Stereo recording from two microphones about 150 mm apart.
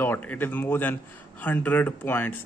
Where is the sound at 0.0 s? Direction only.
15° left (ahead or behind).